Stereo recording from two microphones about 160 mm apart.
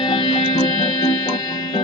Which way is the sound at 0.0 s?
30° left (ahead or behind).